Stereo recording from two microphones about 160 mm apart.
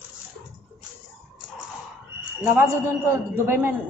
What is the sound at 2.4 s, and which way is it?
A man's voice, 10° right (ahead or behind).